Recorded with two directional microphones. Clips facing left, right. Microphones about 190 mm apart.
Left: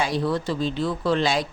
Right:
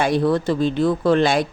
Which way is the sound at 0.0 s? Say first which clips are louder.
Right 6 dB; 55° right (ahead or behind).